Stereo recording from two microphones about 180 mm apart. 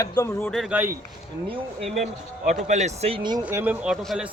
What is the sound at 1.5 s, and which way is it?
Speech, 35° right (ahead or behind).